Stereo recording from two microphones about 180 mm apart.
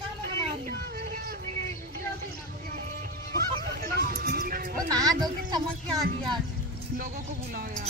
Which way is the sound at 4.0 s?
60° right (ahead or behind).